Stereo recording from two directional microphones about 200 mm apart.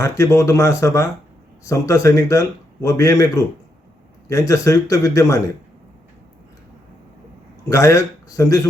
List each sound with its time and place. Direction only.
0.0 s speech: 15° left (ahead or behind)
7.7 s speech: 15° left (ahead or behind)